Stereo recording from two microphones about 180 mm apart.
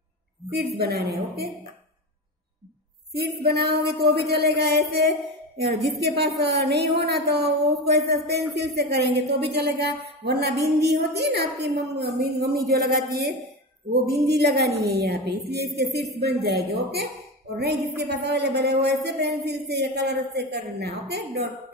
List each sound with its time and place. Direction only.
0.5 s speech: 60° right (ahead or behind)
3.4 s speech: 60° right (ahead or behind)
10.2 s a sound: 65° right (ahead or behind)
10.6 s speech: 65° right (ahead or behind)